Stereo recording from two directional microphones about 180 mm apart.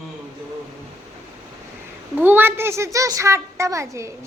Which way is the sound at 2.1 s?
10° right (ahead or behind).